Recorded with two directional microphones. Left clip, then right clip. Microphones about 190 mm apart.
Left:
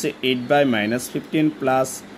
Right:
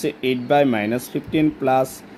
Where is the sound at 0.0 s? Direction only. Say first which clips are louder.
Even; 20° right (ahead or behind).